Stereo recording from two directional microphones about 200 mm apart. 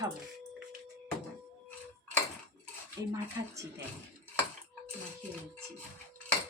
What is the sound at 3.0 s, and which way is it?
Dishes, 15° right (ahead or behind).